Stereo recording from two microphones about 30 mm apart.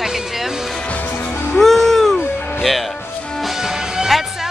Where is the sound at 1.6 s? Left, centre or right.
Centre.